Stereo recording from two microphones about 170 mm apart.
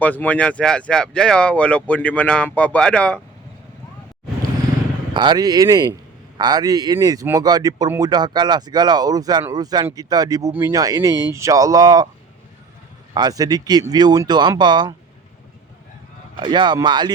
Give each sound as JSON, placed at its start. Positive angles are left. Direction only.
{"t": 0.0, "sound": "speech", "side_deg": 10}
{"t": 5.1, "sound": "a man's voice", "side_deg": -25}
{"t": 11.1, "sound": "speech", "side_deg": 20}
{"t": 11.3, "sound": "a man's voice", "side_deg": -20}
{"t": 13.1, "sound": "a man's voice", "side_deg": -20}
{"t": 16.4, "sound": "a man's voice", "side_deg": -25}